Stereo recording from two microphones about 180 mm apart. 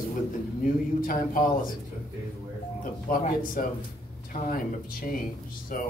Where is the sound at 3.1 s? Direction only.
50° left (ahead or behind).